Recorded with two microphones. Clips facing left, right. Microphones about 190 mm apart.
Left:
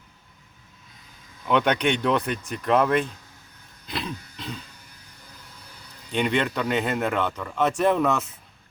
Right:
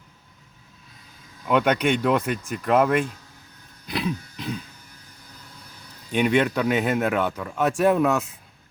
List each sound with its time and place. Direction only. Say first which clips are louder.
1.5 s speech: right 1 dB; 5° right (ahead or behind)
3.8 s a sound: right 5 dB; 10° right (ahead or behind)
6.1 s speech: right 4 dB; 10° right (ahead or behind)